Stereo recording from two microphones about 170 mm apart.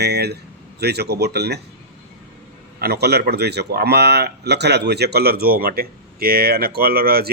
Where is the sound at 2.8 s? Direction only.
70° right (ahead or behind).